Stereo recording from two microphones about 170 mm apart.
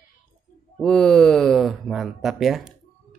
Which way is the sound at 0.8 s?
5° left (ahead or behind).